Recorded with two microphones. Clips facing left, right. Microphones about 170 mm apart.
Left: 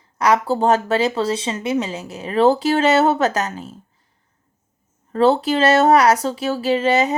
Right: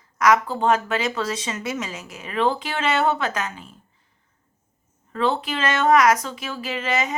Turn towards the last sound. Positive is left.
turn(degrees=35)  # may be behind; listen again after turning